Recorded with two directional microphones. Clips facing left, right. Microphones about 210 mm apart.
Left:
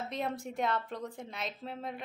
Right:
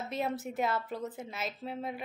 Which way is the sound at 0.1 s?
5° right (ahead or behind).